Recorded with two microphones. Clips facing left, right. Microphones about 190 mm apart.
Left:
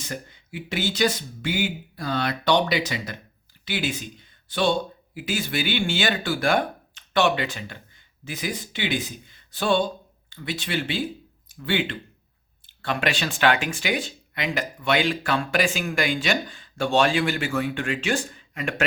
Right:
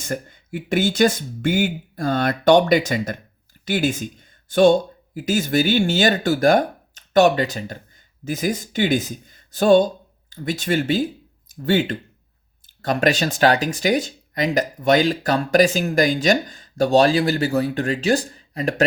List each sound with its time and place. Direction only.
0.0 s speech: 50° right (ahead or behind)